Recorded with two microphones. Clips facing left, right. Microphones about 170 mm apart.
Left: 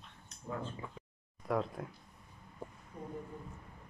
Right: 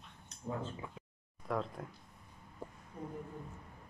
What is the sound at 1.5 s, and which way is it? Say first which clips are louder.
Speech: left 3 dB; 5° left (ahead or behind).